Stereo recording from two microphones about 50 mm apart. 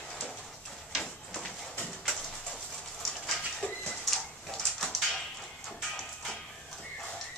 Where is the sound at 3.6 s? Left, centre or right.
Left.